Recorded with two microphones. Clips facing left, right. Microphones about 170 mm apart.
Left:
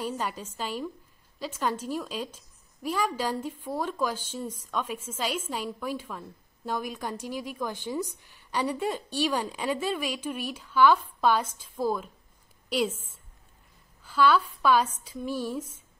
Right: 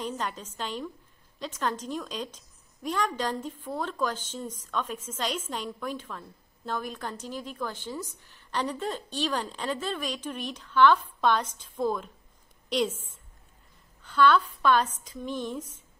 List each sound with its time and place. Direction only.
0.0 s a woman's voice: 10° left (ahead or behind)